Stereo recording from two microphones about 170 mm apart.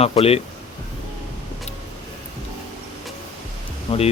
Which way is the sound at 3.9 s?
35° left (ahead or behind).